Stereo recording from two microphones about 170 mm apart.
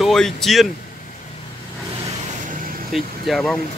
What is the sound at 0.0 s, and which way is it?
Speech, centre (ahead or behind).